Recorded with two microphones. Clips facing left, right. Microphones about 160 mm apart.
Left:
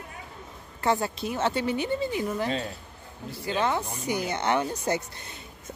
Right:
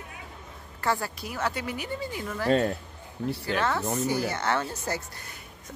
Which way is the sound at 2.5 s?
55° right (ahead or behind).